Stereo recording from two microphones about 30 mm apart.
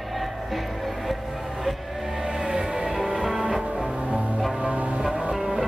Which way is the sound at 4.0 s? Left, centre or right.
Right.